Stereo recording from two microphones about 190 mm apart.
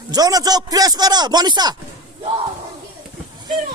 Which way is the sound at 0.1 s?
20° right (ahead or behind).